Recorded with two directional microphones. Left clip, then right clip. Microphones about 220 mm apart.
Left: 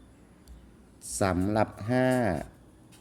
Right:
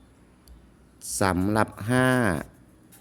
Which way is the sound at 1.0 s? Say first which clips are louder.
Right 3 dB; 20° right (ahead or behind).